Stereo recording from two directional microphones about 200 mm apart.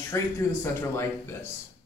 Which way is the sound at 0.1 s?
15° left (ahead or behind).